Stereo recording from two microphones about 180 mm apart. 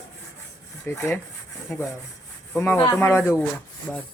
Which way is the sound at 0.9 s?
15° left (ahead or behind).